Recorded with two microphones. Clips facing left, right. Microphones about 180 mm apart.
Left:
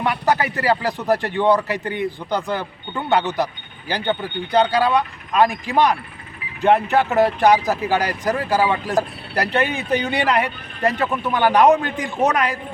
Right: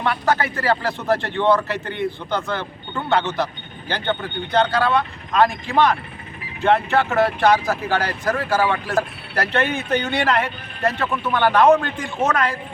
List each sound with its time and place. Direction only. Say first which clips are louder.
0.0 s speech: left 1 dB; 15° left (ahead or behind)